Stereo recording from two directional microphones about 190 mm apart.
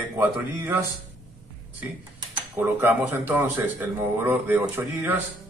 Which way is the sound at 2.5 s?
15° right (ahead or behind).